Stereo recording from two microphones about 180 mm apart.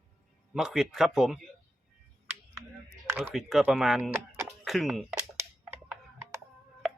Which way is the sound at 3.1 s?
10° right (ahead or behind).